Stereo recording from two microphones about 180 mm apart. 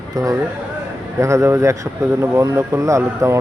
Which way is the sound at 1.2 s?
15° right (ahead or behind).